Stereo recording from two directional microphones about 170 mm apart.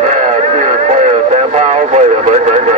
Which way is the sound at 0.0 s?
45° right (ahead or behind).